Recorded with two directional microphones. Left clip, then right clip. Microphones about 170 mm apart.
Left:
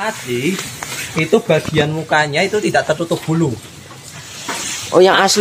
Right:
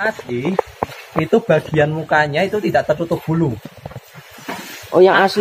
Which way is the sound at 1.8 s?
20° left (ahead or behind).